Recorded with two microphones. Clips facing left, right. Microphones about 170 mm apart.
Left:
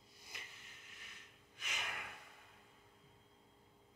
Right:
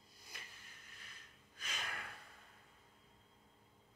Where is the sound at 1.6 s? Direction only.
20° left (ahead or behind).